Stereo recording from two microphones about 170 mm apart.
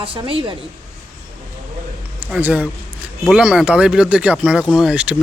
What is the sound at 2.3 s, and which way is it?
A man's voice, 10° right (ahead or behind).